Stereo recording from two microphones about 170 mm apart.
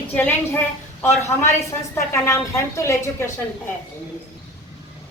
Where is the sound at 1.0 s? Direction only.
15° left (ahead or behind).